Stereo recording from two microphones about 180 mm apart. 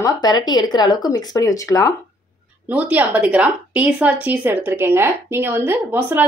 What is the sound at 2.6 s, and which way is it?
Speech, 10° right (ahead or behind).